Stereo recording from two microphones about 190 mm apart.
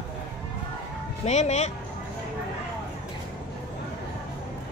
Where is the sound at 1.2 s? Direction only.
35° left (ahead or behind).